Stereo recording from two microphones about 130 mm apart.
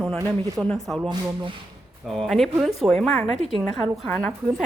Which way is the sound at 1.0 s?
35° right (ahead or behind).